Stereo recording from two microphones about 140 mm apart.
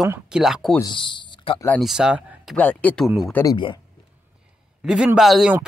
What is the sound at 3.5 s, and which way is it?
Speech, 35° left (ahead or behind).